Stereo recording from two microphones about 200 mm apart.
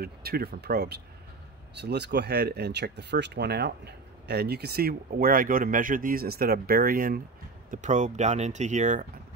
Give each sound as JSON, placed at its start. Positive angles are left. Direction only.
{"t": 0.0, "sound": "speech", "side_deg": -50}